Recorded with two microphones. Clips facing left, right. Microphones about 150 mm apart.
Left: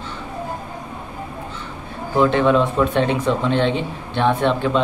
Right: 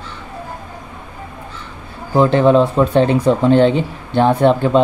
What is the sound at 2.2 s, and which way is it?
Speech, 35° right (ahead or behind).